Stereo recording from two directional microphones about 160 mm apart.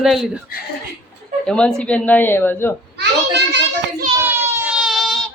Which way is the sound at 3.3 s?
90° right.